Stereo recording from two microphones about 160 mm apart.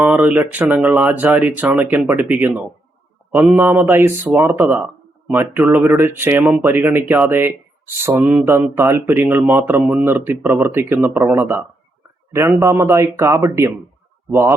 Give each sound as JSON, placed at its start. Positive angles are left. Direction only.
{"t": 0.0, "sound": "speech", "side_deg": -10}